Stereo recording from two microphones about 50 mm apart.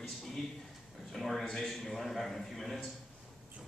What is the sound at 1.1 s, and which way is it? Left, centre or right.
A man's voice, centre.